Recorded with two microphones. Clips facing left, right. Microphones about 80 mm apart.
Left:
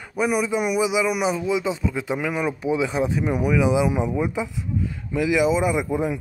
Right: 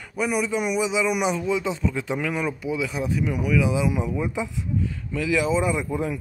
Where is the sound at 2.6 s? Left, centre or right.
Left.